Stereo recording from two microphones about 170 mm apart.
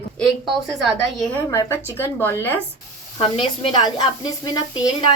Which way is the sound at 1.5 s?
15° left (ahead or behind).